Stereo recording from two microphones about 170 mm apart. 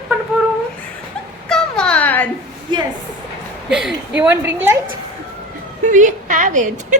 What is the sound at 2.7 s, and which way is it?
Speech, 25° right (ahead or behind).